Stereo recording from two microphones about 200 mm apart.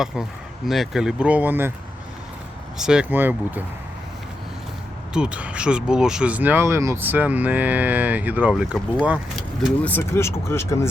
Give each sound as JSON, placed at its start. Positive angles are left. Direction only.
{"t": 0.7, "sound": "speech", "side_deg": 0}
{"t": 2.7, "sound": "speech", "side_deg": -5}
{"t": 5.1, "sound": "speech", "side_deg": -5}
{"t": 9.6, "sound": "speech", "side_deg": 10}